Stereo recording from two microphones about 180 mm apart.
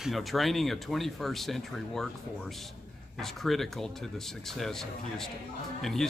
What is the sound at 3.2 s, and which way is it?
Speech, centre (ahead or behind).